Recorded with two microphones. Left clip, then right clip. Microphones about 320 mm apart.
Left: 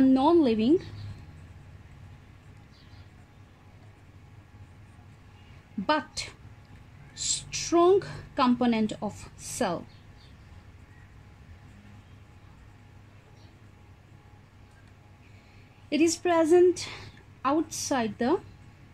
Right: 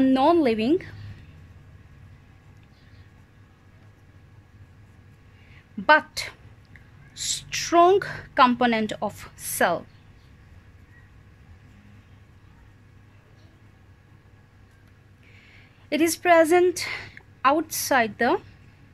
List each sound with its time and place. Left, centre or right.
0.0 s a sound: right
5.9 s a woman's voice: right
15.9 s a woman's voice: right